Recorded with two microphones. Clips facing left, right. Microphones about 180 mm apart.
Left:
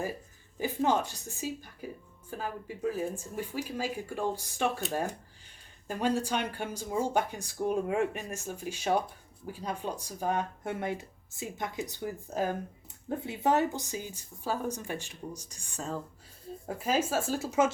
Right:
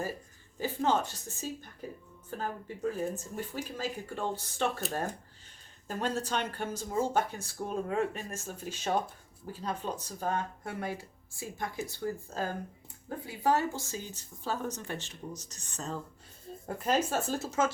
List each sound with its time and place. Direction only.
0.6 s speech: 15° left (ahead or behind)
5.9 s speech: 10° left (ahead or behind)